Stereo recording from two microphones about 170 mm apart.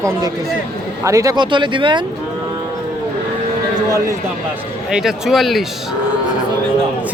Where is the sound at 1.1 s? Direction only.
20° right (ahead or behind).